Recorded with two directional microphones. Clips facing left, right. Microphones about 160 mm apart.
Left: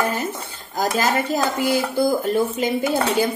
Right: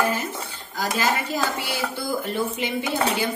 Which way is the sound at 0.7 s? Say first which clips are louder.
Left 4 dB; 40° left (ahead or behind).